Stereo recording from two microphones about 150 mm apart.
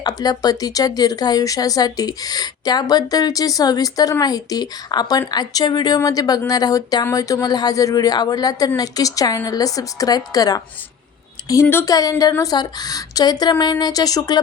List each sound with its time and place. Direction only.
0.0 s speech: 25° left (ahead or behind)
11.7 s speech: 20° left (ahead or behind)